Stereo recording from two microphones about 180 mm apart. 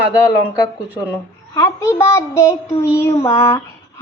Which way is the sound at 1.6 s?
15° left (ahead or behind).